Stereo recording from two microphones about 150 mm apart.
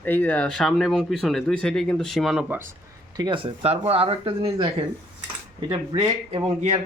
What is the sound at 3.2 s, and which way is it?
Speech, 35° right (ahead or behind).